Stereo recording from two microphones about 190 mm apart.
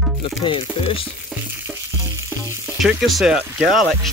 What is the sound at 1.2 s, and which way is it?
Frying, 10° right (ahead or behind).